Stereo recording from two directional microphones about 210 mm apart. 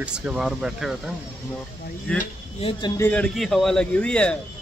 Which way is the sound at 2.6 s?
25° left (ahead or behind).